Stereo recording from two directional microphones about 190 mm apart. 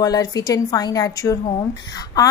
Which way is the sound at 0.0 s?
20° left (ahead or behind).